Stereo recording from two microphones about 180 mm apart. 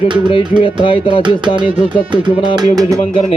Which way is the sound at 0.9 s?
30° left (ahead or behind).